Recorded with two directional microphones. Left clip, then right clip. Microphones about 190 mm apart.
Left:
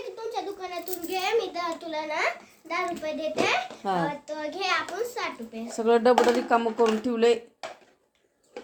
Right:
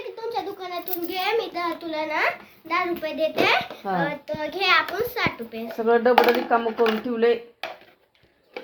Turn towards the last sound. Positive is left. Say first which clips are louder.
# right 1 dB
turn(degrees=30)  # may be behind; listen again after turning